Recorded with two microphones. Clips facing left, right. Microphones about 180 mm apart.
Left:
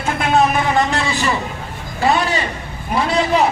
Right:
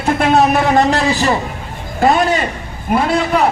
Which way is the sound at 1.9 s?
50° right (ahead or behind).